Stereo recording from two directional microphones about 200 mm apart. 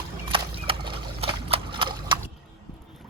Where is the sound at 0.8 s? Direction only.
25° right (ahead or behind).